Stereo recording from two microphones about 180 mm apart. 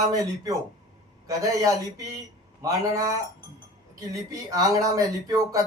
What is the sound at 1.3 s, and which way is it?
Speech, 20° right (ahead or behind).